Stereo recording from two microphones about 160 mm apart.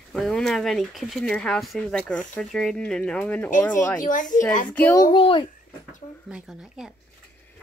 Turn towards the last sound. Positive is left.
turn(degrees=-5)  # may be behind; listen again after turning